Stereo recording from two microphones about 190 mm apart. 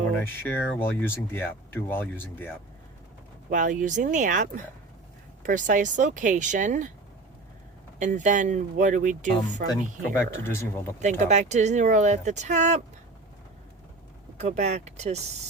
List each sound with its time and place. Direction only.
0.3 s speech: 10° left (ahead or behind)
3.5 s speech: 45° right (ahead or behind)
7.9 s speech: 40° right (ahead or behind)
10.2 s speech: 15° left (ahead or behind)
11.0 s speech: 40° right (ahead or behind)
14.3 s speech: 35° right (ahead or behind)